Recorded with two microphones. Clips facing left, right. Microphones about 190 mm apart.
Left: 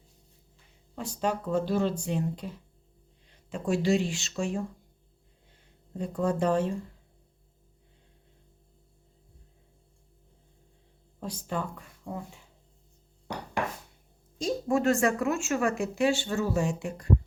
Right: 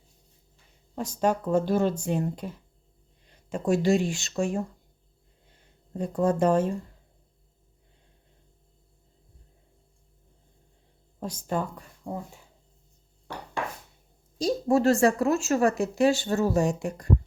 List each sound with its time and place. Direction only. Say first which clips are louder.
0.9 s speech: right 5 dB; 45° right (ahead or behind)
6.0 s speech: right 4 dB; 45° right (ahead or behind)
11.2 s speech: right 4 dB; 45° right (ahead or behind)
14.3 s speech: right 4 dB; 35° right (ahead or behind)